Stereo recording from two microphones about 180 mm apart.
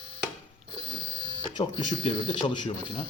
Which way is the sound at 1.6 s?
25° left (ahead or behind).